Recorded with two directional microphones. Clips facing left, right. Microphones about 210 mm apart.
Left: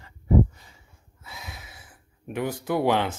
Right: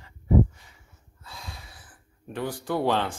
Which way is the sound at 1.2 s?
5° left (ahead or behind).